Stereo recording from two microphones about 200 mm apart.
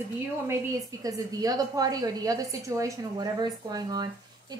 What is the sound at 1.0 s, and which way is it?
A woman's voice, 20° right (ahead or behind).